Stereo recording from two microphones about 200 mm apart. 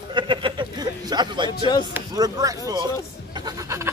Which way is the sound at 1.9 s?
20° right (ahead or behind).